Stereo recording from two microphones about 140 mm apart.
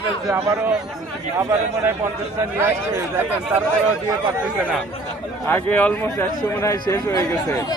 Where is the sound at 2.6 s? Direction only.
15° right (ahead or behind).